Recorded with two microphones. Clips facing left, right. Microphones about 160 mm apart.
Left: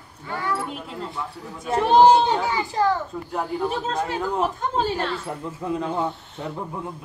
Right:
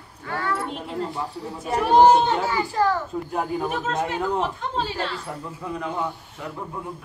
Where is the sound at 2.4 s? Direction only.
20° left (ahead or behind).